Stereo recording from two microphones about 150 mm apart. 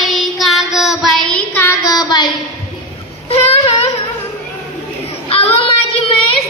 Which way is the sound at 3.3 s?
45° left (ahead or behind).